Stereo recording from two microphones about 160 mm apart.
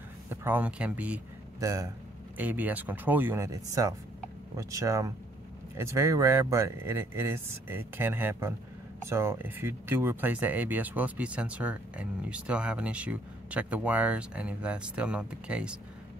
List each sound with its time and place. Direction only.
0.3 s speech: 15° right (ahead or behind)
1.6 s speech: 20° right (ahead or behind)
2.3 s speech: 10° right (ahead or behind)